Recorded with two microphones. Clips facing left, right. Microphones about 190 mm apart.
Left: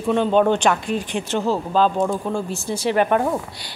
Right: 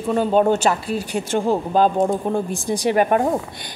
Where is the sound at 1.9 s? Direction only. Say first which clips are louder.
Right 2 dB; 25° right (ahead or behind).